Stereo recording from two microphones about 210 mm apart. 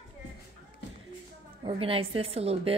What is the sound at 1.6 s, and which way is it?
A woman's voice, 25° right (ahead or behind).